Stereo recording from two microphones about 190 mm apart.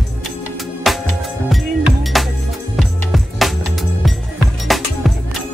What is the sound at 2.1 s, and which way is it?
Music, centre (ahead or behind).